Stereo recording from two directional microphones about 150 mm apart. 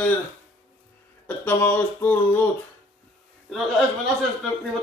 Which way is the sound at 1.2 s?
15° left (ahead or behind).